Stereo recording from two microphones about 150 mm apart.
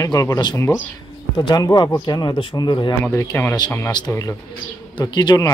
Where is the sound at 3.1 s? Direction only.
15° left (ahead or behind).